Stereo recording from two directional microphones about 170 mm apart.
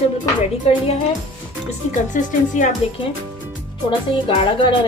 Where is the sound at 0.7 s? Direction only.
35° left (ahead or behind).